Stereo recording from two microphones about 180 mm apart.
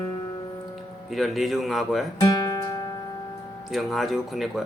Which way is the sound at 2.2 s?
20° left (ahead or behind).